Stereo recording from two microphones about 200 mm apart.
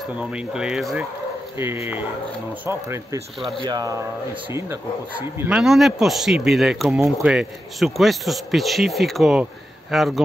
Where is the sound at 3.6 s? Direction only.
20° right (ahead or behind).